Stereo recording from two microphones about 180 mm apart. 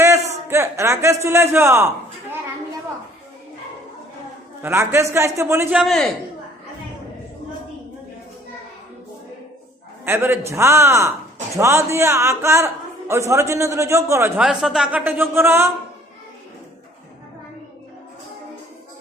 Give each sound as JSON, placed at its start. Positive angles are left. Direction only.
{"t": 0.4, "sound": "a man's voice", "side_deg": -15}
{"t": 4.6, "sound": "a man's voice", "side_deg": -15}
{"t": 5.8, "sound": "a man's voice", "side_deg": 0}
{"t": 10.1, "sound": "a man's voice", "side_deg": -15}
{"t": 14.4, "sound": "a man's voice", "side_deg": 0}